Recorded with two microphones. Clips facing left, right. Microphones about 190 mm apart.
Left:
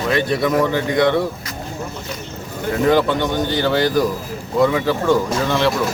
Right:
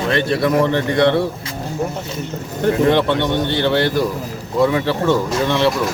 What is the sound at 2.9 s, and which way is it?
Speech, 5° left (ahead or behind).